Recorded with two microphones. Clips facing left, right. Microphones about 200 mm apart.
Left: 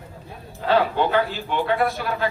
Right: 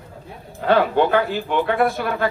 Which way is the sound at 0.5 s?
55° right (ahead or behind).